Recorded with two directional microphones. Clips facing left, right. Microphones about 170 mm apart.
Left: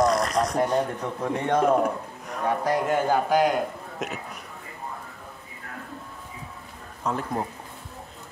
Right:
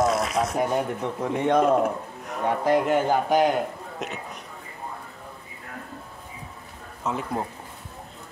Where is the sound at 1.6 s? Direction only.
Centre (ahead or behind).